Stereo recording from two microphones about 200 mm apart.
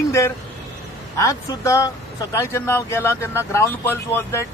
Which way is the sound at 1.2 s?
15° left (ahead or behind).